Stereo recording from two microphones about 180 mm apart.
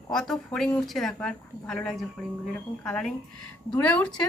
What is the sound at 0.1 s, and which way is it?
Speech, 5° left (ahead or behind).